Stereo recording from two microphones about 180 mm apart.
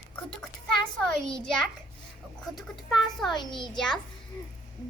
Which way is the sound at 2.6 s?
Centre (ahead or behind).